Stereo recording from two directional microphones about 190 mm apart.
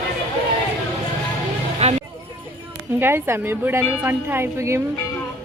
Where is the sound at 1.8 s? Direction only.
35° right (ahead or behind).